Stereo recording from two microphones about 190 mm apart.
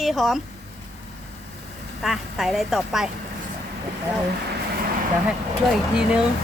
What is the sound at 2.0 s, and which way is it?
A child's voice, centre (ahead or behind).